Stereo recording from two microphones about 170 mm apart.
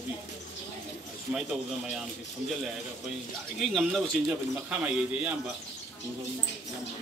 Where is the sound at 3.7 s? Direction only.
Centre (ahead or behind).